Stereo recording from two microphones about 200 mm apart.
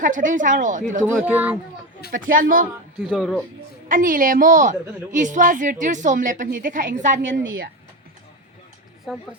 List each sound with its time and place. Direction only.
0.0 s a woman's voice: 40° right (ahead or behind)
1.2 s a child's voice: 5° right (ahead or behind)
2.4 s speech: 45° right (ahead or behind)
3.0 s speech: centre (ahead or behind)
3.8 s a woman's voice: 45° right (ahead or behind)
9.1 s speech: centre (ahead or behind)